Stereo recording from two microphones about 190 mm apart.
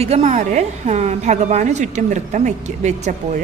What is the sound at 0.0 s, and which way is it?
A woman's voice, 35° right (ahead or behind).